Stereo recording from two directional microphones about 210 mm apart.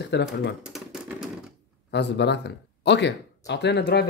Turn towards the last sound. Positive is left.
turn(degrees=55)  # may be behind; listen again after turning